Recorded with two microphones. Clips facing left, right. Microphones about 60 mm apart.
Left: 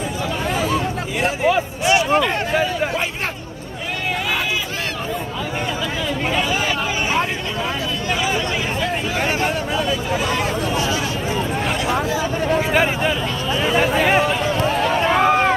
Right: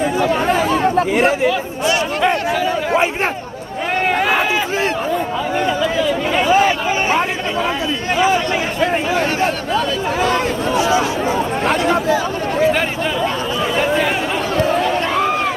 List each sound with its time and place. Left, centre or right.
0.2 s chatter: right
6.3 s a sound: right
11.6 s speech: right